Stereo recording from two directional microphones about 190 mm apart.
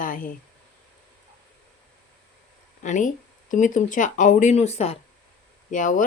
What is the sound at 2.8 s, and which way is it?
Speech, 40° left (ahead or behind).